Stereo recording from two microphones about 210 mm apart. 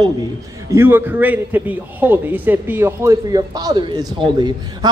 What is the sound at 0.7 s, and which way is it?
A man's voice, 10° right (ahead or behind).